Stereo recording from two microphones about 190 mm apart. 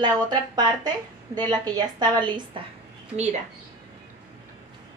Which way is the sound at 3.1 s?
35° right (ahead or behind).